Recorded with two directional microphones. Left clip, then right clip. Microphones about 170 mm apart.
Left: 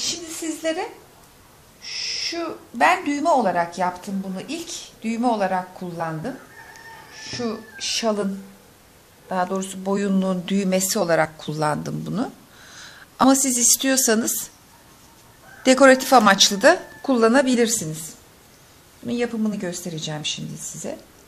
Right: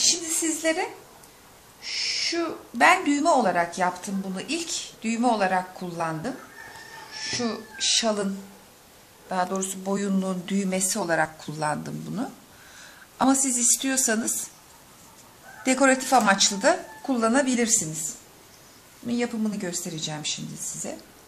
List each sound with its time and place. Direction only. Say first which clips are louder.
0.0 s a sound: right 3 dB; 15° left (ahead or behind)
1.8 s speech: even; 15° left (ahead or behind)
9.3 s speech: left 3 dB; 20° left (ahead or behind); by 14.3 s 45° left (ahead or behind)
15.6 s a woman's voice: left 8 dB; 50° left (ahead or behind); by 20.3 s 30° left (ahead or behind)